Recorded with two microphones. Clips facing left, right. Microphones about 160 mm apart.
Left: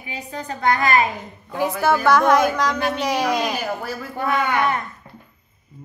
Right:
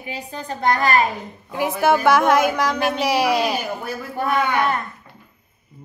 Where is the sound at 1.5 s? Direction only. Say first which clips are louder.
Right 1 dB; 10° right (ahead or behind).